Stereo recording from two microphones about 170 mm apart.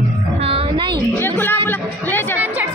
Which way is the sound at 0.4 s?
35° right (ahead or behind).